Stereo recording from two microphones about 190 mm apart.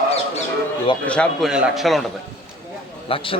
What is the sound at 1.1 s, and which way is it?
Speech, 5° left (ahead or behind).